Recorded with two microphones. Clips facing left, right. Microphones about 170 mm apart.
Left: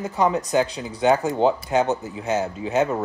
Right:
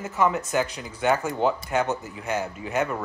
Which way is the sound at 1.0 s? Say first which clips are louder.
Left 4 dB; 20° left (ahead or behind).